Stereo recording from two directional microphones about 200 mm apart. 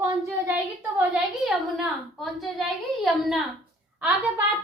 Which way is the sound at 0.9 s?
Centre (ahead or behind).